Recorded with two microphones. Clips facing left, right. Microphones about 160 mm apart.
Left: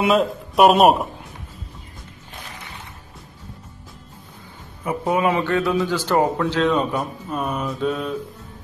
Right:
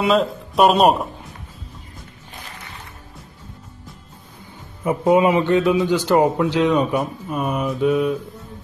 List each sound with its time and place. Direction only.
0.0 s speech: centre (ahead or behind)
4.8 s a man's voice: 20° right (ahead or behind)